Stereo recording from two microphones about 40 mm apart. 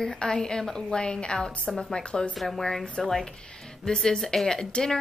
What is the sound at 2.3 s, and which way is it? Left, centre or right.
A woman's voice, centre.